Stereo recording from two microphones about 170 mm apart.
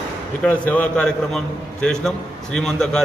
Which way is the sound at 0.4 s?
10° left (ahead or behind).